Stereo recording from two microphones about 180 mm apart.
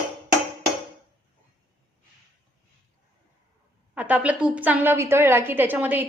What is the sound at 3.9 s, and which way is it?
A woman's voice, 10° right (ahead or behind).